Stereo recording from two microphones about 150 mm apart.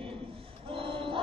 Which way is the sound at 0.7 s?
35° right (ahead or behind).